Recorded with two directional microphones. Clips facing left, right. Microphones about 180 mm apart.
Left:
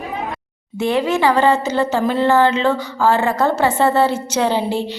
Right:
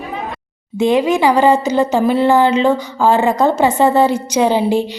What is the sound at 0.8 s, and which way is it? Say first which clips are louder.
A woman's voice: right 4 dB; 15° right (ahead or behind).